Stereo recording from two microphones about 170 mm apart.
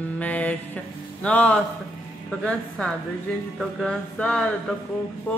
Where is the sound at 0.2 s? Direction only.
10° left (ahead or behind).